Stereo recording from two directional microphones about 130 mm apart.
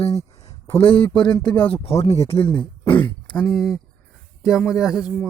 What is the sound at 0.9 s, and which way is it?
Speech, 10° left (ahead or behind).